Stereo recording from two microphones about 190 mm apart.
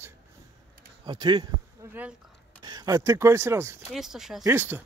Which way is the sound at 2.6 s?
20° right (ahead or behind).